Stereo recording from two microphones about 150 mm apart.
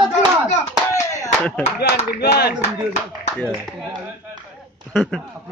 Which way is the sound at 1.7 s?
90° left.